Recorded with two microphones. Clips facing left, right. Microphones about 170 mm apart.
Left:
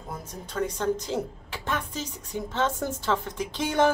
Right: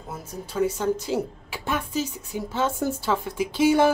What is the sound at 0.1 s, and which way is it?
A woman's voice, 10° right (ahead or behind).